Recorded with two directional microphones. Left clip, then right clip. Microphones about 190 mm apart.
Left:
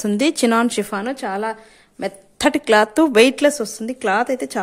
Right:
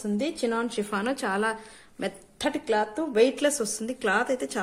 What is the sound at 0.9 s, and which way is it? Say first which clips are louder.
A woman's voice: left 4 dB; 20° left (ahead or behind).